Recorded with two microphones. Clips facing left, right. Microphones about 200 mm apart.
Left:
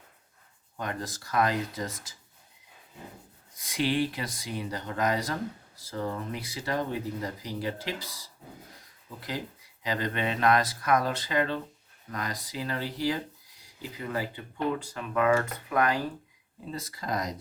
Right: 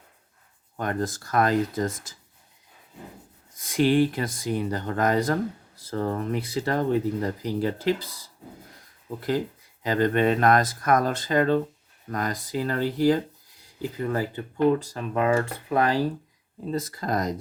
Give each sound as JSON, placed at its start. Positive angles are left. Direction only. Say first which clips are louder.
{"t": 0.8, "sound": "speech", "louder": "right 7 dB", "side_deg": -50}
{"t": 3.6, "sound": "speech", "louder": "right 7 dB", "side_deg": -50}
{"t": 9.0, "sound": "speech", "louder": "right 10 dB", "side_deg": -50}
{"t": 16.7, "sound": "speech", "louder": "right 6 dB", "side_deg": -50}